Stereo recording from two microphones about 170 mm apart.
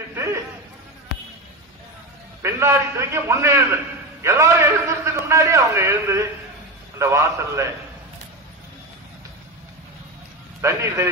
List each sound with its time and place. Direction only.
2.4 s a man's voice: 15° right (ahead or behind)
10.6 s a man's voice: 15° right (ahead or behind)